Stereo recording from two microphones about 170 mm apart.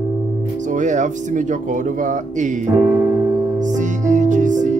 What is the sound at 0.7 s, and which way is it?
Speech, 45° right (ahead or behind).